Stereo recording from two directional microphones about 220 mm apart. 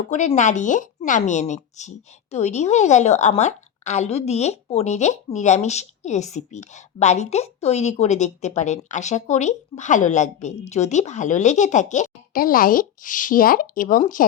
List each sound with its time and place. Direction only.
0.1 s a woman's voice: 35° left (ahead or behind)